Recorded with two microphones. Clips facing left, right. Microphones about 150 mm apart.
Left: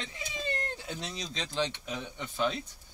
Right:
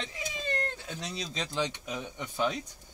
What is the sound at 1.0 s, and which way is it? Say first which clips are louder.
Speech: right 2 dB; 5° right (ahead or behind).